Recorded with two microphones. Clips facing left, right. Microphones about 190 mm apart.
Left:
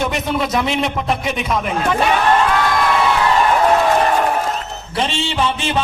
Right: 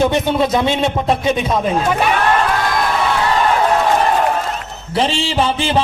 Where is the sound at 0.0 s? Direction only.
30° right (ahead or behind).